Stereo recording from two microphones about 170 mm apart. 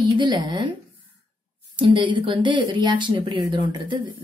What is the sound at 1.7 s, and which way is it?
A woman's voice, 30° right (ahead or behind).